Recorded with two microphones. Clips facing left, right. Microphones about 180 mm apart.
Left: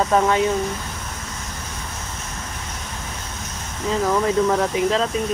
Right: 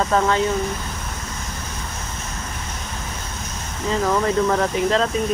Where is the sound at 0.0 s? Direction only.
10° left (ahead or behind).